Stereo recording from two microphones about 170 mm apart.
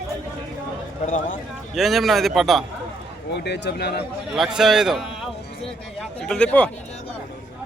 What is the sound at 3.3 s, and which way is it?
Speech, 80° left.